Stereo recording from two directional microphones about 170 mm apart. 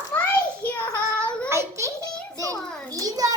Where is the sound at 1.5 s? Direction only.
15° right (ahead or behind).